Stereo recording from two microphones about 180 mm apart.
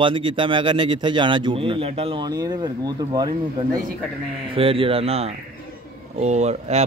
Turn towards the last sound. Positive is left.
turn(degrees=-35)  # may be behind; listen again after turning